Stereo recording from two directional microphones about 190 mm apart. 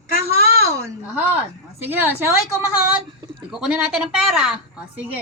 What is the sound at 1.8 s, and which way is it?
Speech, 10° right (ahead or behind).